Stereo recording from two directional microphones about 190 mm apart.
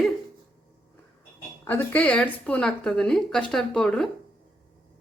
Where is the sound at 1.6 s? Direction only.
10° left (ahead or behind).